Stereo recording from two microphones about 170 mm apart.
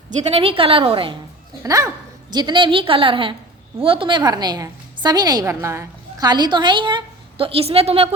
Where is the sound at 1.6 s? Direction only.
20° right (ahead or behind).